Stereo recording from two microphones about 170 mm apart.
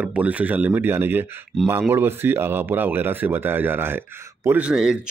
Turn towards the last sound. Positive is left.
turn(degrees=-5)  # may be behind; listen again after turning